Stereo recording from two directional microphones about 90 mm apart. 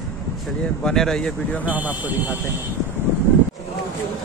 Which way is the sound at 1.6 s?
15° right (ahead or behind).